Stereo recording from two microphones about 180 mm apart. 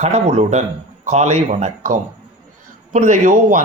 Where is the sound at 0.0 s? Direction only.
35° right (ahead or behind).